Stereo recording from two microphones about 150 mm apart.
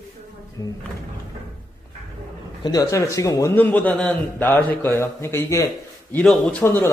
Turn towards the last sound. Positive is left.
turn(degrees=15)  # may be behind; listen again after turning